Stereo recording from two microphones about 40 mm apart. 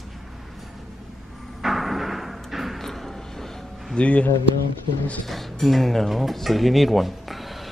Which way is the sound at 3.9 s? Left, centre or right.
Left.